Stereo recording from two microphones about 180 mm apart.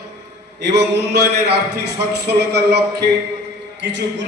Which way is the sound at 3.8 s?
80° right.